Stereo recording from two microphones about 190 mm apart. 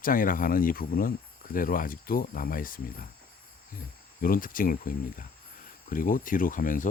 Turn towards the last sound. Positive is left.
turn(degrees=45)  # may be behind; listen again after turning